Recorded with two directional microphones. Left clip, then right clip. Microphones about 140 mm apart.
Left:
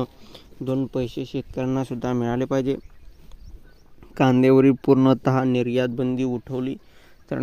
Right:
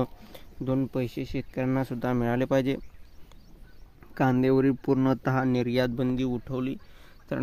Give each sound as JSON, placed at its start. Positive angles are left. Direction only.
{"t": 0.0, "sound": "a sound", "side_deg": 5}
{"t": 0.7, "sound": "speech", "side_deg": 15}
{"t": 4.0, "sound": "speech", "side_deg": 40}
{"t": 5.5, "sound": "speech", "side_deg": 25}
{"t": 6.1, "sound": "speech", "side_deg": 35}